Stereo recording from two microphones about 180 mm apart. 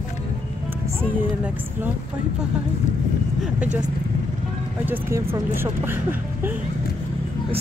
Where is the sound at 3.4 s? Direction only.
5° right (ahead or behind).